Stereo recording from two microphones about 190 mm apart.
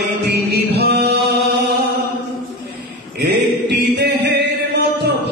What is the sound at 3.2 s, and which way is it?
A capella, 60° right (ahead or behind).